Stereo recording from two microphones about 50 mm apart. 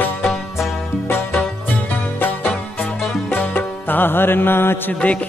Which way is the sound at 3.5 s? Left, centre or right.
Left.